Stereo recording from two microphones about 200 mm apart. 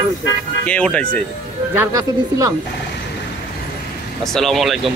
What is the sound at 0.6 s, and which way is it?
Speech, 5° left (ahead or behind).